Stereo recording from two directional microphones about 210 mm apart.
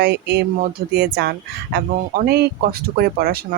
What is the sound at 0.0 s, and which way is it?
Speech, 50° right (ahead or behind).